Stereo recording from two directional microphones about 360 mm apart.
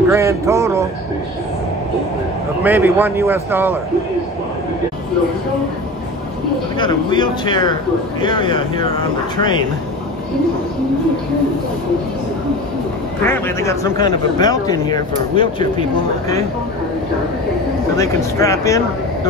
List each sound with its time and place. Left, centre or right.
0.1 s a man's voice: centre
2.6 s a man's voice: centre
6.8 s a man's voice: centre
13.2 s a man's voice: centre
17.9 s a man's voice: centre